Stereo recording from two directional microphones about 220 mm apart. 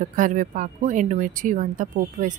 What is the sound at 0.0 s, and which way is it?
Speech, 35° right (ahead or behind).